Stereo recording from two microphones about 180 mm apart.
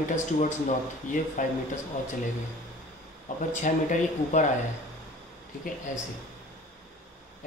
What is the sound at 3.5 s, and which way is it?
Speech, 45° left (ahead or behind).